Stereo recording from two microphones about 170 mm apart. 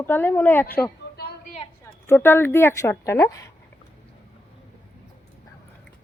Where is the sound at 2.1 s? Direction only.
15° left (ahead or behind).